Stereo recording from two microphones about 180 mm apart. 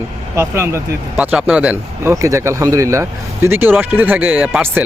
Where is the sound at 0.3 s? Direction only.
15° right (ahead or behind).